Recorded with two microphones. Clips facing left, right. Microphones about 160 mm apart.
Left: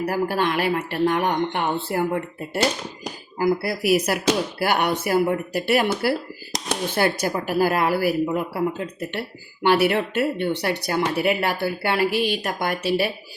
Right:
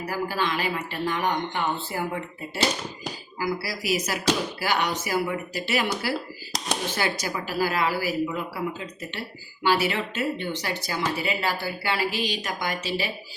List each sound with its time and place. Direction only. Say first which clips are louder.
0.0 s speech: left 5 dB; 60° left (ahead or behind)